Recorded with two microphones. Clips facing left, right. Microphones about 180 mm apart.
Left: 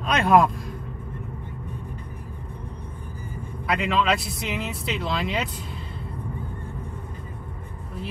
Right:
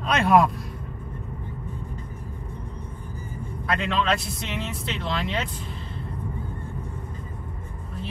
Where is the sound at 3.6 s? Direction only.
5° left (ahead or behind).